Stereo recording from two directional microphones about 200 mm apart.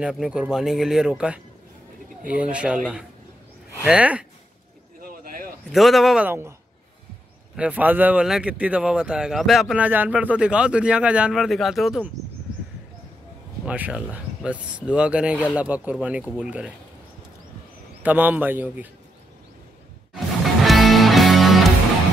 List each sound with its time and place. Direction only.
0.0 s a man's voice: 5° right (ahead or behind)
5.0 s a sound: 45° right (ahead or behind)
5.7 s a man's voice: centre (ahead or behind)
7.5 s a man's voice: 5° right (ahead or behind)
13.7 s a man's voice: 5° right (ahead or behind)
18.0 s speech: 10° right (ahead or behind)
20.6 s music: centre (ahead or behind)